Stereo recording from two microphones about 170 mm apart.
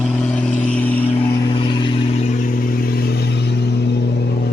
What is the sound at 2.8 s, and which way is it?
Vehicle, 70° left (ahead or behind).